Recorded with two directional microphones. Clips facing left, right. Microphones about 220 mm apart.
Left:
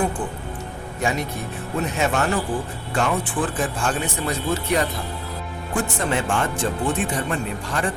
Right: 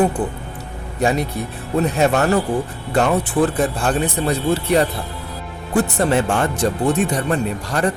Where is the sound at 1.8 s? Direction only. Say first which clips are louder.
Right 6 dB; 35° right (ahead or behind).